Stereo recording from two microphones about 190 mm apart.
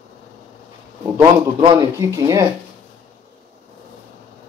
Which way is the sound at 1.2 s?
20° right (ahead or behind).